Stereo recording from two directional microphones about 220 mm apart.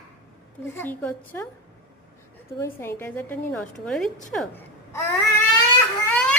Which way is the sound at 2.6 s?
10° left (ahead or behind).